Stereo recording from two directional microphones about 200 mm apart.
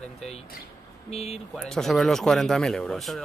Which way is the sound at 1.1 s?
30° left (ahead or behind).